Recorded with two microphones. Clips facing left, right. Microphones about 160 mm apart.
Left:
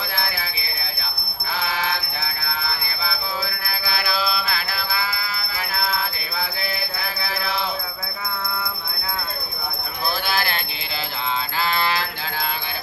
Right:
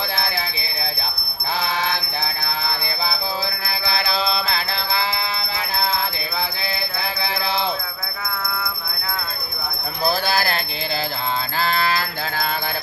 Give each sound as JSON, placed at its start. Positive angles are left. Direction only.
{"t": 1.6, "sound": "music", "side_deg": -30}
{"t": 6.6, "sound": "mantra", "side_deg": -30}
{"t": 10.0, "sound": "jingle bell", "side_deg": -40}
{"t": 11.5, "sound": "music", "side_deg": -40}